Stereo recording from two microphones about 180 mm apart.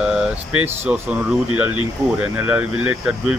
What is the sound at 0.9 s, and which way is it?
Speech, 10° right (ahead or behind).